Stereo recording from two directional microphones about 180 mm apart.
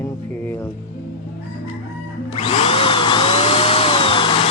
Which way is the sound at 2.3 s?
30° left (ahead or behind).